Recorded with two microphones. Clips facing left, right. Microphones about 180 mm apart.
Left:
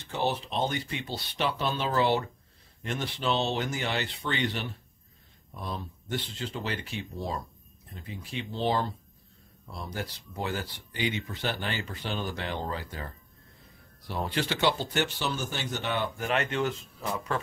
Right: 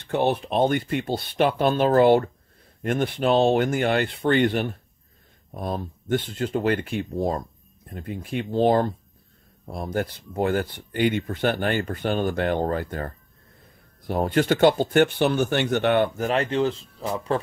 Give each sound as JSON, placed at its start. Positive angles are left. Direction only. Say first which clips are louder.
{"t": 0.0, "sound": "speech", "louder": "right 7 dB", "side_deg": -60}
{"t": 16.2, "sound": "speech", "louder": "right 6 dB", "side_deg": -35}